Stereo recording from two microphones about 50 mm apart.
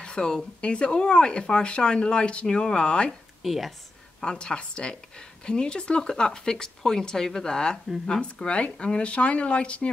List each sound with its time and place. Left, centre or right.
0.0 s speech: centre
3.4 s speech: centre
4.2 s speech: centre